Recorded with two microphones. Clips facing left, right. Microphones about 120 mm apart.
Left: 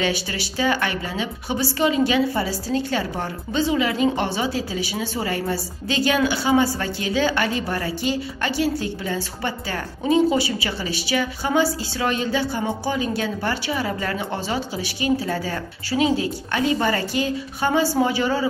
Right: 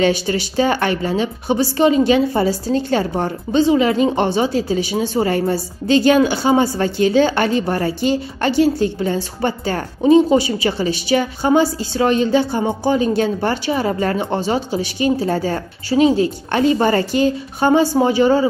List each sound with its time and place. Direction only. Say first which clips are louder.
0.3 s a woman's voice: right 6 dB; 35° right (ahead or behind)
11.1 s a woman's voice: right 7 dB; 35° right (ahead or behind)